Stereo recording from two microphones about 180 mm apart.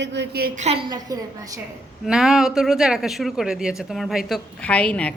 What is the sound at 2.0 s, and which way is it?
Speech, 5° right (ahead or behind).